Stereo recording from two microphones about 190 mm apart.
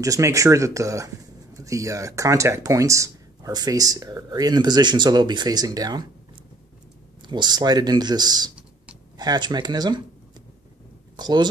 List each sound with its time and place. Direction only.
0.0 s speech: 15° right (ahead or behind)
7.2 s speech: 20° right (ahead or behind)
11.1 s speech: 20° right (ahead or behind)